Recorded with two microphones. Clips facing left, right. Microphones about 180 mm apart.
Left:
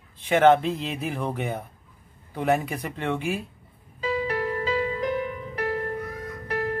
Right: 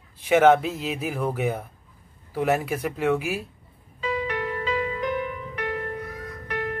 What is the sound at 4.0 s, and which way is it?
Music, 35° left (ahead or behind).